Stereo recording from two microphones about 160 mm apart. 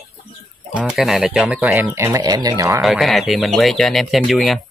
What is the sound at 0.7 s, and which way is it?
Speech, 5° right (ahead or behind).